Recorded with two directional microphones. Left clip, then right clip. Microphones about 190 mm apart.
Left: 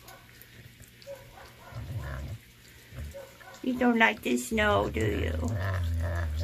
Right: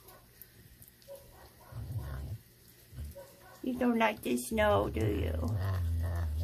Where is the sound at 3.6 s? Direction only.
5° right (ahead or behind).